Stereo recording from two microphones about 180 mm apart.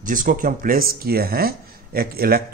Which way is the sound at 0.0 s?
45° right (ahead or behind).